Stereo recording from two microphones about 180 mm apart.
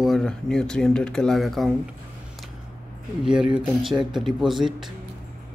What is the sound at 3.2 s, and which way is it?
Speech, 5° right (ahead or behind).